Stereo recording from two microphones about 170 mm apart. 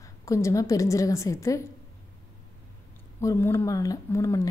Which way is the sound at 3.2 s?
15° left (ahead or behind).